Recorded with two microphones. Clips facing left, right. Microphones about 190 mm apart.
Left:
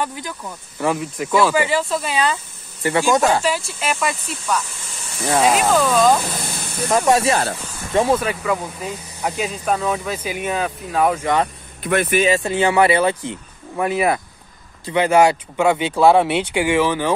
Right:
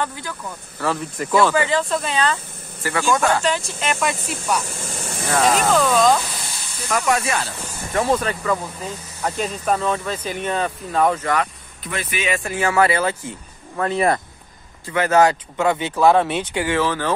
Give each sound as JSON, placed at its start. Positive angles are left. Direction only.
{"t": 0.0, "sound": "speech", "side_deg": 15}
{"t": 2.8, "sound": "speech", "side_deg": 25}
{"t": 3.8, "sound": "speech", "side_deg": 0}
{"t": 4.6, "sound": "a sound", "side_deg": -50}
{"t": 5.4, "sound": "speech", "side_deg": 5}
{"t": 6.3, "sound": "spray", "side_deg": 55}
{"t": 6.9, "sound": "speech", "side_deg": 30}
{"t": 8.0, "sound": "speech", "side_deg": 10}
{"t": 11.8, "sound": "speech", "side_deg": 55}
{"t": 12.2, "sound": "speech", "side_deg": 35}
{"t": 12.4, "sound": "speech", "side_deg": 20}
{"t": 13.8, "sound": "speech", "side_deg": 5}